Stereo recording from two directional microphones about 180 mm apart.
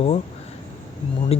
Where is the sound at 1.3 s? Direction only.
35° left (ahead or behind).